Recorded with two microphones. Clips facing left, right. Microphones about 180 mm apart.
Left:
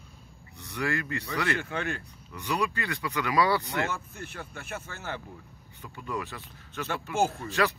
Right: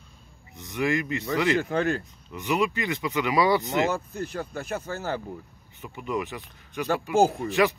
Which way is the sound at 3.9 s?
40° right (ahead or behind).